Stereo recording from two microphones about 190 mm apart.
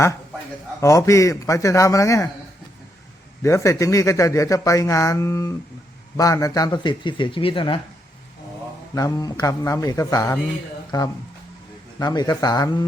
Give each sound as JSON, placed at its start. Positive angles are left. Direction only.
{"t": 0.8, "sound": "speech", "side_deg": 15}
{"t": 3.4, "sound": "speech", "side_deg": 15}
{"t": 9.0, "sound": "speech", "side_deg": 20}